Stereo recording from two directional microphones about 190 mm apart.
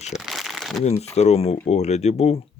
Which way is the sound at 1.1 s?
35° left (ahead or behind).